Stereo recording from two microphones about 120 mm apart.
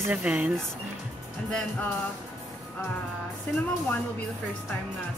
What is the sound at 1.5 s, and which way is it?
Music, 5° left (ahead or behind).